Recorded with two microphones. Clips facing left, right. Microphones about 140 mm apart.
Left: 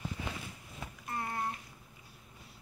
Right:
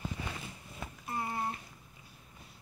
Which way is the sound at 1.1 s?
5° right (ahead or behind).